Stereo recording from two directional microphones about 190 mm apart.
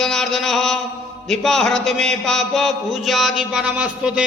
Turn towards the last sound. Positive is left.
turn(degrees=-5)  # may be behind; listen again after turning